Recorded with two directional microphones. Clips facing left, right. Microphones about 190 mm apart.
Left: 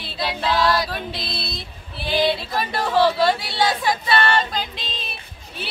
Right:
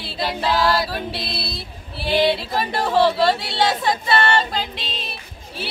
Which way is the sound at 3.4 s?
25° right (ahead or behind).